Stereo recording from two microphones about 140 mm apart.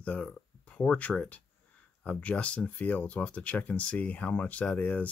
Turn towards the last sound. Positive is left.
turn(degrees=10)  # may be behind; listen again after turning